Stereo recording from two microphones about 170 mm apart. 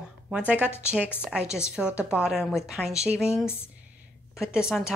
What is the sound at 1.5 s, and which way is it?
A woman's voice, 5° right (ahead or behind).